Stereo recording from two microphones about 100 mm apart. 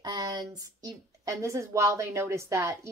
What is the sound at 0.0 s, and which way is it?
A woman's voice, 45° right (ahead or behind).